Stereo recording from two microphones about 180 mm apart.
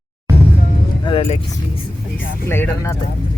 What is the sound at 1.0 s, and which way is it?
Speech, 30° left (ahead or behind).